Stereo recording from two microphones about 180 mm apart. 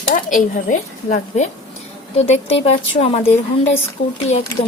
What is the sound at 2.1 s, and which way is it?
Speech, 35° left (ahead or behind).